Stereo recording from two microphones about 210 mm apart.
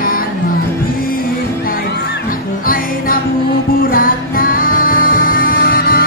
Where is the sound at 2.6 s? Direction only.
45° left (ahead or behind).